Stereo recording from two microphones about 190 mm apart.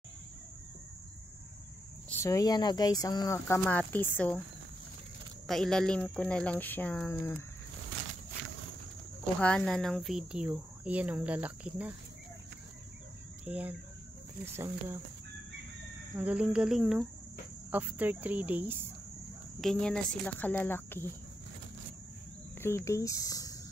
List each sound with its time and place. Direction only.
2.0 s speech: 15° left (ahead or behind)
5.5 s speech: 5° left (ahead or behind)
9.4 s speech: 5° left (ahead or behind)
13.5 s speech: 5° right (ahead or behind)
16.2 s speech: 5° right (ahead or behind)
19.6 s speech: 5° left (ahead or behind)
22.6 s speech: 15° left (ahead or behind)